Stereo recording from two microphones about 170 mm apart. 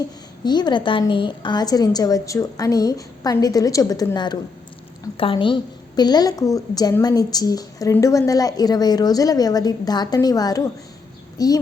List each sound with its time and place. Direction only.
0.4 s a woman's voice: 25° left (ahead or behind)